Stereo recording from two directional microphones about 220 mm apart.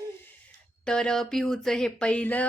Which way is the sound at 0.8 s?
5° left (ahead or behind).